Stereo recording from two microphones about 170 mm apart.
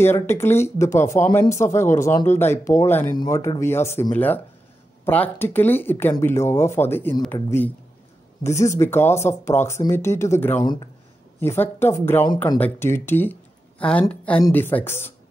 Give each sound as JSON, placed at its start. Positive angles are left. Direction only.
{"t": 0.0, "sound": "speech", "side_deg": 15}